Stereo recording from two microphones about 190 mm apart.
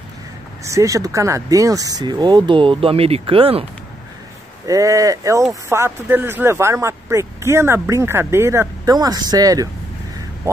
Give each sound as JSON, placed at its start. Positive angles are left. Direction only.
{"t": 0.7, "sound": "speech", "side_deg": -15}
{"t": 4.6, "sound": "speech", "side_deg": -15}